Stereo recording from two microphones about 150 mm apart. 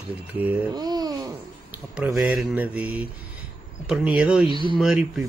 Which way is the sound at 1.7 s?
5° right (ahead or behind).